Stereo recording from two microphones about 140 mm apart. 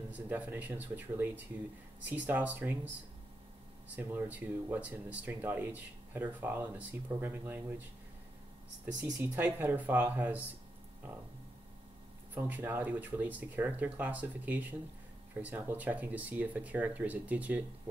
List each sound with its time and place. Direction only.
0.1 s speech: 10° right (ahead or behind)
3.9 s speech: 10° right (ahead or behind)
9.6 s speech: 15° right (ahead or behind)
12.4 s speech: 15° right (ahead or behind)